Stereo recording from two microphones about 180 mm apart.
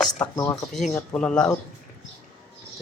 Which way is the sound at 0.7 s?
5° left (ahead or behind).